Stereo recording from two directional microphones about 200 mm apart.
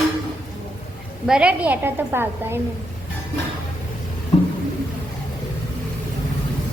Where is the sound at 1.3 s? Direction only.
5° right (ahead or behind).